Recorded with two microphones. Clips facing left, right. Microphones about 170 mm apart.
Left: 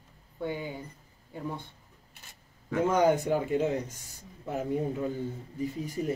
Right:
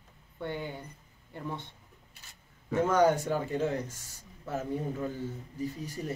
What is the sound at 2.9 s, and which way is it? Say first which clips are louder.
A man's voice: left 1 dB; 20° left (ahead or behind).